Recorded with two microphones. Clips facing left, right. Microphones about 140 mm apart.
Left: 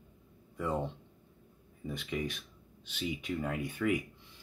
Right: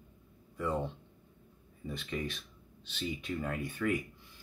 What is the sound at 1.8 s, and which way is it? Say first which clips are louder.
Speech: left 1 dB; 15° left (ahead or behind).